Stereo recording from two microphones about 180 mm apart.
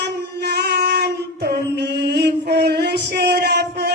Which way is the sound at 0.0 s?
65° right (ahead or behind).